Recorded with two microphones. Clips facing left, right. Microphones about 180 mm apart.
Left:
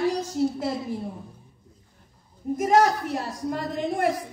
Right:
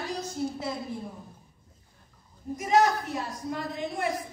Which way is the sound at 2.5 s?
50° left (ahead or behind).